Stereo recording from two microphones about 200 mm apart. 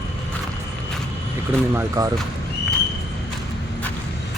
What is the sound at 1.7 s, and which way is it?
Speech, 15° right (ahead or behind).